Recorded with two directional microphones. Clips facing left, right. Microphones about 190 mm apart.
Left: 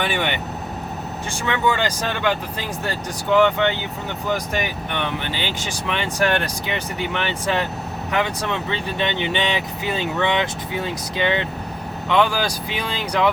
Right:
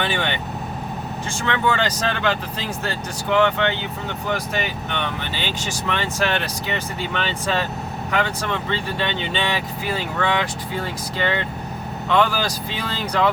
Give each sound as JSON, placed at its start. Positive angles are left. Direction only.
{"t": 0.0, "sound": "speech", "side_deg": 15}
{"t": 1.5, "sound": "speech", "side_deg": 10}